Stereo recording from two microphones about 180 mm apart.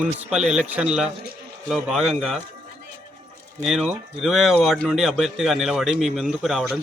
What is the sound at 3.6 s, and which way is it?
A man's voice, centre (ahead or behind).